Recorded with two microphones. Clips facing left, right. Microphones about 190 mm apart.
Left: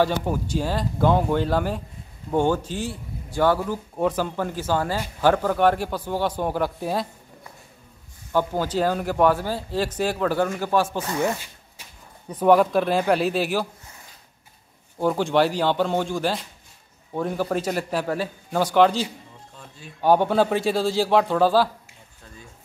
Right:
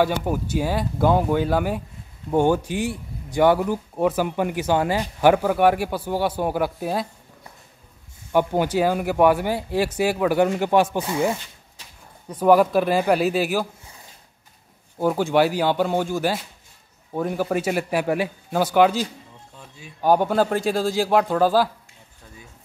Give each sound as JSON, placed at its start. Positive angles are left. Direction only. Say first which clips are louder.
{"t": 0.0, "sound": "speech", "louder": "right 1 dB", "side_deg": -10}
{"t": 8.3, "sound": "speech", "louder": "right 3 dB", "side_deg": -15}
{"t": 12.4, "sound": "speech", "louder": "right 1 dB", "side_deg": -5}
{"t": 15.0, "sound": "speech", "louder": "right 1 dB", "side_deg": -5}
{"t": 20.7, "sound": "speech", "louder": "even", "side_deg": -10}